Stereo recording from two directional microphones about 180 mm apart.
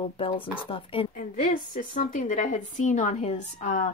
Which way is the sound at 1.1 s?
50° left (ahead or behind).